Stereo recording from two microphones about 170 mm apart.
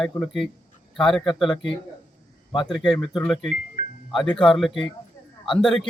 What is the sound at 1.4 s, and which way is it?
Speech, 30° left (ahead or behind).